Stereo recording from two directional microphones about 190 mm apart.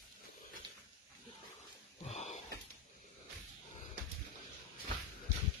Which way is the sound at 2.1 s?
35° left (ahead or behind).